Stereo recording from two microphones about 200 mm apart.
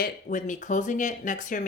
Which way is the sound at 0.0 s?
40° left (ahead or behind).